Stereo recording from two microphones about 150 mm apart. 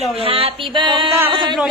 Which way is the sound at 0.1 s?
40° right (ahead or behind).